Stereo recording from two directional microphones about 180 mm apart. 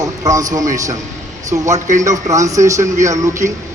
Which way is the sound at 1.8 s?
45° right (ahead or behind).